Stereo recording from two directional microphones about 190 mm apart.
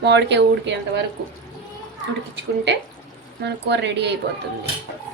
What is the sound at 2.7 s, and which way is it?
Speech, 65° right (ahead or behind).